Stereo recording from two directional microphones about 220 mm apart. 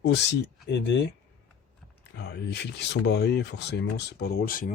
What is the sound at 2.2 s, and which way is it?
A man's voice, 50° left (ahead or behind).